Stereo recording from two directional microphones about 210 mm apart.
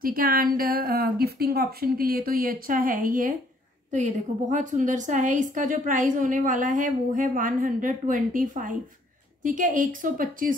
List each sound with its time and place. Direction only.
0.0 s a woman's voice: 45° right (ahead or behind)